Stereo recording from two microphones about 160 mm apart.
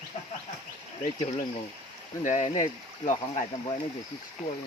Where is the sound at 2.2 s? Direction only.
50° left (ahead or behind).